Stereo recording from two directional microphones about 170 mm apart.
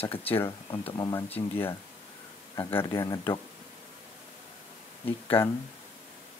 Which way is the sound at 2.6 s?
15° left (ahead or behind).